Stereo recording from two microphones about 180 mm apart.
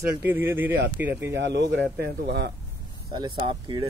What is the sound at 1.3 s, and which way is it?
Speech, 75° right (ahead or behind).